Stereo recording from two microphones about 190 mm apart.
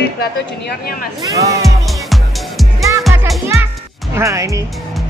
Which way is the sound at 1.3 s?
15° right (ahead or behind).